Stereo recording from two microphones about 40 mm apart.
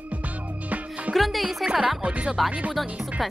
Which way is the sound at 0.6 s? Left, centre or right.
Right.